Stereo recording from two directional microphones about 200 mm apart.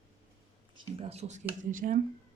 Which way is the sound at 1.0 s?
30° right (ahead or behind).